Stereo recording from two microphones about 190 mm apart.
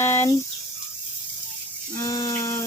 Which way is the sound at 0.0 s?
15° left (ahead or behind).